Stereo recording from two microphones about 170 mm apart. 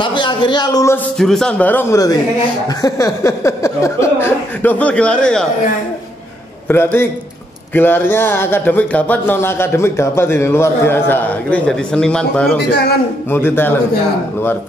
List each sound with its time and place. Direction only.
0.0 s a sound: 25° left (ahead or behind)
0.9 s a man's voice: centre (ahead or behind)
6.7 s a man's voice: 15° left (ahead or behind)